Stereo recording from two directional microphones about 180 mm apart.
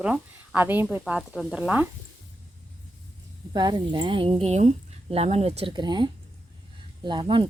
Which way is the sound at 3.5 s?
25° right (ahead or behind).